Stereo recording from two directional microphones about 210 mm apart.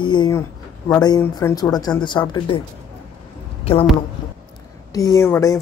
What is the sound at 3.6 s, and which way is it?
Speech, 25° left (ahead or behind).